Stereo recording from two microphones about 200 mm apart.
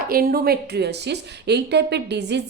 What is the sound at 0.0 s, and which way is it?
A woman's voice, 45° right (ahead or behind).